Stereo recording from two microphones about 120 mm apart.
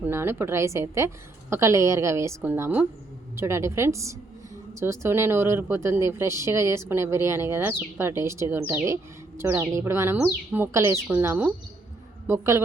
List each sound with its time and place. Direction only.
0.0 s speech: 20° right (ahead or behind)